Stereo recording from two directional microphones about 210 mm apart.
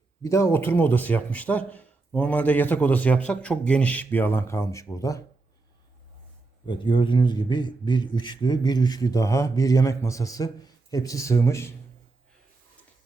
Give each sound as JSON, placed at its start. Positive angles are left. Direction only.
{"t": 0.2, "sound": "a man's voice", "side_deg": 15}
{"t": 6.7, "sound": "a man's voice", "side_deg": 25}